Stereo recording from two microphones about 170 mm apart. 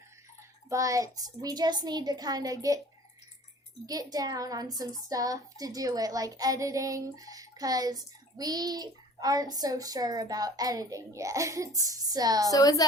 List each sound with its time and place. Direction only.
0.7 s speech: 20° right (ahead or behind)
3.8 s speech: 20° right (ahead or behind)
12.5 s a woman's voice: 20° left (ahead or behind)